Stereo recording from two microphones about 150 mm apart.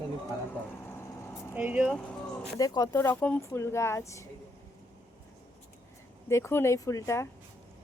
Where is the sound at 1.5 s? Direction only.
10° right (ahead or behind).